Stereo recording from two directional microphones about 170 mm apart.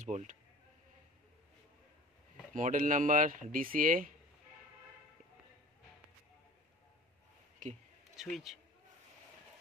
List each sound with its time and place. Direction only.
0.0 s speech: 45° right (ahead or behind)
2.5 s speech: 50° right (ahead or behind)
7.6 s speech: 50° right (ahead or behind)
8.2 s a man's voice: centre (ahead or behind)